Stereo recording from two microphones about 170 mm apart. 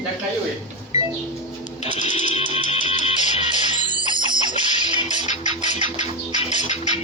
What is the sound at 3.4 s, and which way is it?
Music, 30° right (ahead or behind).